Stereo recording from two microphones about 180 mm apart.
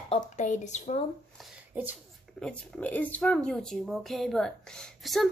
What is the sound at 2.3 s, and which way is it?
Speech, 5° left (ahead or behind).